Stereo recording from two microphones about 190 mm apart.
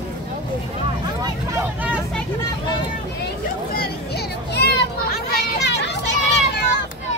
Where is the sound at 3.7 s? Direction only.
55° left (ahead or behind).